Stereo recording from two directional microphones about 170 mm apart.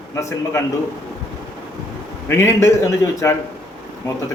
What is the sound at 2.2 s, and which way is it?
A man's voice, 15° left (ahead or behind).